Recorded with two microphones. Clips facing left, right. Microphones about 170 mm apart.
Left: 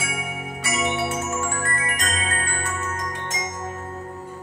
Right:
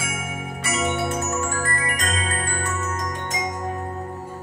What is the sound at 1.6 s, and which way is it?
Music, 35° right (ahead or behind).